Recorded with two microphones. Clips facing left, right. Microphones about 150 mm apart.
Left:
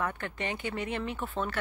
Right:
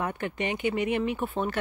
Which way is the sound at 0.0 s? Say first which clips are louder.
Right 4 dB; 15° right (ahead or behind).